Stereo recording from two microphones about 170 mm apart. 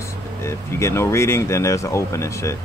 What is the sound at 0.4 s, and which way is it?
Speech, 15° left (ahead or behind).